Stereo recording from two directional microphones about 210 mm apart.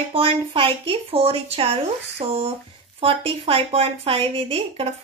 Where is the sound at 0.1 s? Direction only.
25° right (ahead or behind).